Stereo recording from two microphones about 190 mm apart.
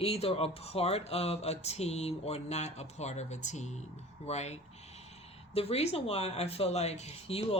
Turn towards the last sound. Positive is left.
turn(degrees=30)  # may be behind; listen again after turning